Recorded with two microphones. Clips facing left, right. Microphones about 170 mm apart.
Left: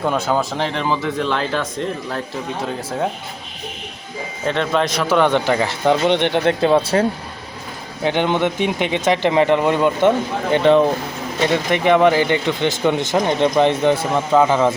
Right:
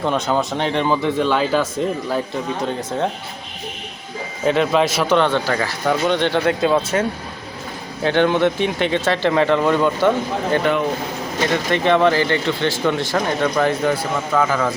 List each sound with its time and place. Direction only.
0.0 s speech: 5° left (ahead or behind)
4.4 s speech: 5° right (ahead or behind)
5.3 s speech: 20° left (ahead or behind)
6.6 s speech: 30° left (ahead or behind)
8.0 s speech: 15° left (ahead or behind)
10.5 s speech: 30° left (ahead or behind)
11.7 s speech: 15° left (ahead or behind)